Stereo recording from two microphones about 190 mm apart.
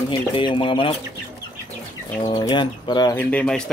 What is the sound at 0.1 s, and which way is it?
Speech, 25° left (ahead or behind).